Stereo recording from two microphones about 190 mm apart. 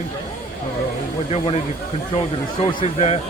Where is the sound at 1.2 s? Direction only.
30° left (ahead or behind).